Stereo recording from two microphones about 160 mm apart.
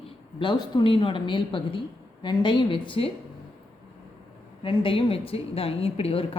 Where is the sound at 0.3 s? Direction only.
30° left (ahead or behind).